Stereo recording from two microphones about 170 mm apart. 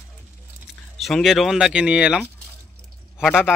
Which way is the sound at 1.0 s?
Centre (ahead or behind).